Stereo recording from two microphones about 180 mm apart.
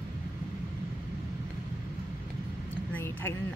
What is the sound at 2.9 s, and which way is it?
Speech, 10° left (ahead or behind).